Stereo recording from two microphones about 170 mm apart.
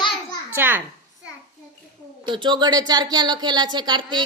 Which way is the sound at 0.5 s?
10° right (ahead or behind).